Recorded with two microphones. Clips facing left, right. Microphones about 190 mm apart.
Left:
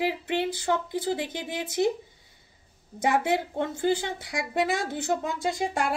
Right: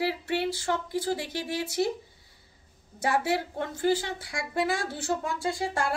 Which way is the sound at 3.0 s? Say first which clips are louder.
Left 2 dB; 20° left (ahead or behind).